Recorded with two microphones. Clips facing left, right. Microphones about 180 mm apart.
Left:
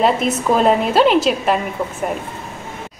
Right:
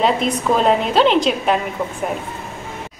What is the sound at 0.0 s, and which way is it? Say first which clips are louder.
A woman's voice: left 1 dB; 5° left (ahead or behind).